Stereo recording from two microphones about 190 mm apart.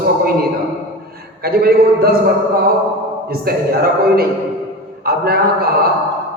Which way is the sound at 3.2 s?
55° right (ahead or behind).